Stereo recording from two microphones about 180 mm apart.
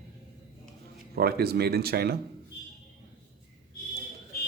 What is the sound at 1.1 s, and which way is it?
Speech, 60° right (ahead or behind).